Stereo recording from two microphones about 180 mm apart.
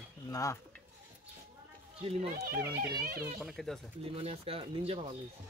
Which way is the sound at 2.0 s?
35° right (ahead or behind).